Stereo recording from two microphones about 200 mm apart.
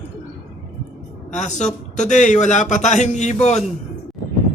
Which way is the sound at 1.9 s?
35° left (ahead or behind).